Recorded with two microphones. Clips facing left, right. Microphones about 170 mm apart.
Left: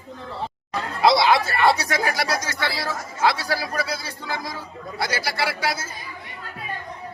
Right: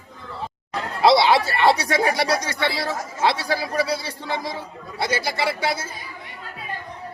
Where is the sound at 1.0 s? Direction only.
30° right (ahead or behind).